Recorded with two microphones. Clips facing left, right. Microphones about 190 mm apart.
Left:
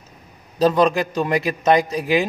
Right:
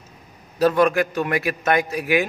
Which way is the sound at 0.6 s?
20° left (ahead or behind).